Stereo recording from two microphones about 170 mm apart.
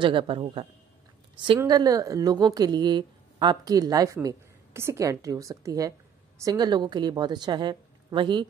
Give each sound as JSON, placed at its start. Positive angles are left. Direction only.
{"t": 0.0, "sound": "a woman's voice", "side_deg": -30}